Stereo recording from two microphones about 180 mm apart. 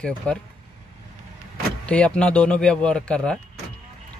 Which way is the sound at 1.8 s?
5° left (ahead or behind).